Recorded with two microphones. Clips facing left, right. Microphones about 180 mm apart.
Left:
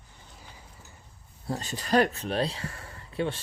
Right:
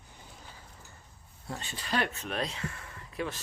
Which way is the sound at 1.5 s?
40° left (ahead or behind).